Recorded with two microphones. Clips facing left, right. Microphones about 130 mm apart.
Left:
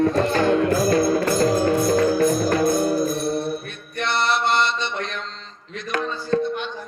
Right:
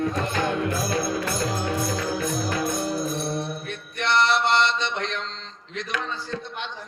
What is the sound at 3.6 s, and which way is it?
Mantra, 90° right.